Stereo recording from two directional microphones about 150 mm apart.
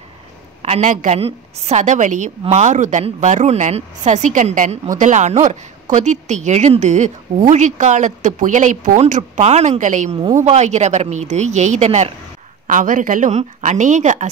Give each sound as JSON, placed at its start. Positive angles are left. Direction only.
{"t": 0.6, "sound": "a woman's voice", "side_deg": -50}
{"t": 12.6, "sound": "a woman's voice", "side_deg": -65}